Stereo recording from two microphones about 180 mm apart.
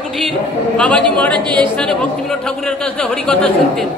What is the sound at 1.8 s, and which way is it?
A man's voice, 5° left (ahead or behind).